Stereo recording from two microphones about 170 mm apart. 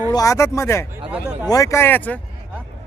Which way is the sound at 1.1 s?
10° right (ahead or behind).